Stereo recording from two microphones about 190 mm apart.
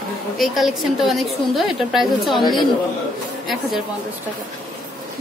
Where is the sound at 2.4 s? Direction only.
25° left (ahead or behind).